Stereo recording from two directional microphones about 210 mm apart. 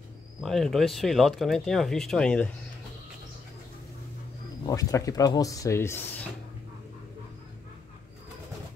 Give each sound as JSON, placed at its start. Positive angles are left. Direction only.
{"t": 0.4, "sound": "speech", "side_deg": 0}
{"t": 4.6, "sound": "speech", "side_deg": 15}